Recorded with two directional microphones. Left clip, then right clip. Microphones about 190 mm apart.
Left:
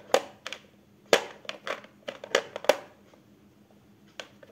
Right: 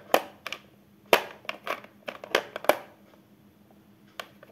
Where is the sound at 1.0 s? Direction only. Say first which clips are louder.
Right 1 dB; 10° right (ahead or behind).